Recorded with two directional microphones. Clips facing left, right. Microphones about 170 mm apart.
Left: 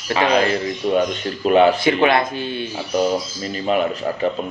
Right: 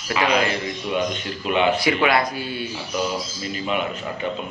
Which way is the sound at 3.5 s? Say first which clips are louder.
Left 6 dB; 40° left (ahead or behind).